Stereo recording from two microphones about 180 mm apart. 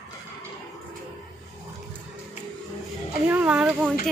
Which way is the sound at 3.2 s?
5° right (ahead or behind).